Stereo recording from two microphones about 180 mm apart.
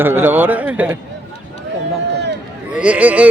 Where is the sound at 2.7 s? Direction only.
5° right (ahead or behind).